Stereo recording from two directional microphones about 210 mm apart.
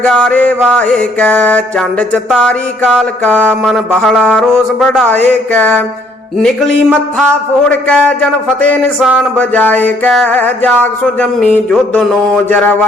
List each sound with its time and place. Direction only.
0.0 s mantra: 5° left (ahead or behind)
7.7 s mantra: 5° left (ahead or behind)
9.3 s a sound: 10° left (ahead or behind)